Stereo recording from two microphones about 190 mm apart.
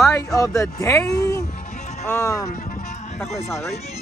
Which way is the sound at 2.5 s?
40° left (ahead or behind).